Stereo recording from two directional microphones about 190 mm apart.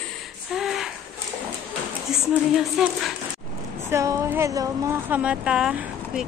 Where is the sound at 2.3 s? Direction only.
Centre (ahead or behind).